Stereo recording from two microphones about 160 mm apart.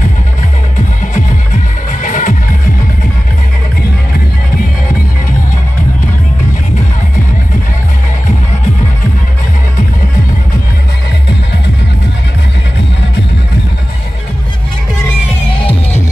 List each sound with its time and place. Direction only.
0.7 s music: 55° left (ahead or behind)